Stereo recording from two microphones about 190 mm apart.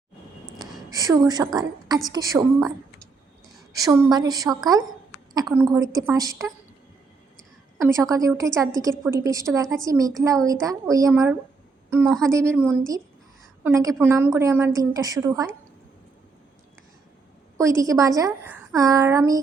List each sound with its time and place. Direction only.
0.9 s a woman's voice: 20° right (ahead or behind)
3.7 s a woman's voice: 20° right (ahead or behind)
7.8 s a woman's voice: 15° right (ahead or behind)
17.6 s a woman's voice: 15° right (ahead or behind)